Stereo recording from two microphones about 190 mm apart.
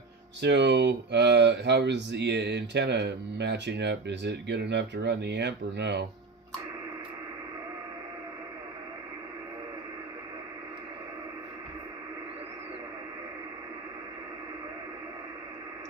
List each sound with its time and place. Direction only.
0.4 s speech: 65° right (ahead or behind)